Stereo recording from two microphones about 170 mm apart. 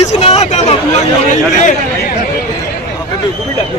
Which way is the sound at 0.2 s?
35° left (ahead or behind).